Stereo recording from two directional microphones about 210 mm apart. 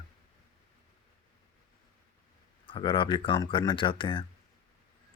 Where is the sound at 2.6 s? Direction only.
25° left (ahead or behind).